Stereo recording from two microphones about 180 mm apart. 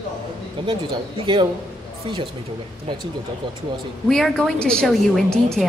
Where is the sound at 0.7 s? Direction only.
30° right (ahead or behind).